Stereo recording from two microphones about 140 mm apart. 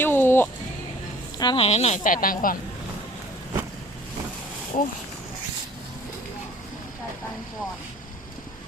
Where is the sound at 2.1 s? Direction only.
85° left.